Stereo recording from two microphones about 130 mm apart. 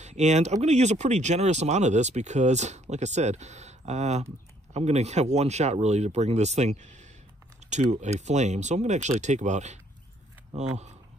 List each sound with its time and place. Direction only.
0.0 s speech: 60° right (ahead or behind)